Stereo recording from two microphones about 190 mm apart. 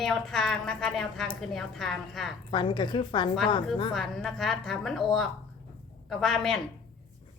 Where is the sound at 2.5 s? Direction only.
25° left (ahead or behind).